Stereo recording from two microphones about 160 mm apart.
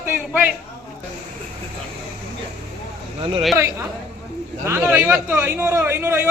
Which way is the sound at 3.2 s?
35° right (ahead or behind).